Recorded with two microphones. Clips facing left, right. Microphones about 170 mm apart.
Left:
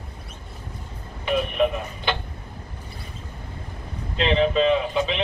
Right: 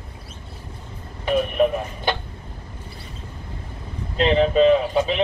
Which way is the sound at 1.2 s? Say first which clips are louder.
Right 3 dB; 45° right (ahead or behind).